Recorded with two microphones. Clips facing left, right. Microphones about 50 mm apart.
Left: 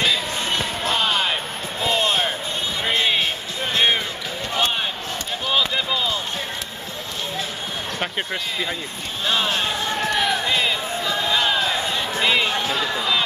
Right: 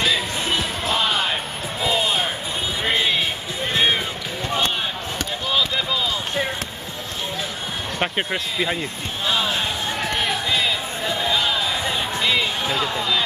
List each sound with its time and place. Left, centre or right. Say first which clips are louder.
1.8 s music: left 1 dB; centre
5.5 s basketball bounce: left 1 dB; centre
8.0 s speech: right 4 dB; centre
11.3 s a sound: left 1 dB; centre